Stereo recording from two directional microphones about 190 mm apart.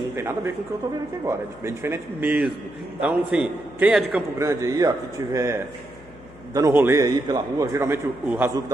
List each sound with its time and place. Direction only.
0.1 s a man's voice: 15° right (ahead or behind)
4.4 s a man's voice: 15° right (ahead or behind)